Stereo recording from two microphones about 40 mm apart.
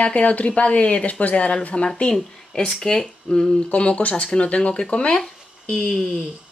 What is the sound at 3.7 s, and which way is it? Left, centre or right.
Speech, left.